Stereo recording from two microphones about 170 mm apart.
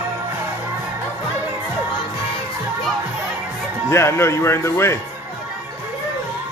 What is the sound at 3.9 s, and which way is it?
Speech, 15° left (ahead or behind).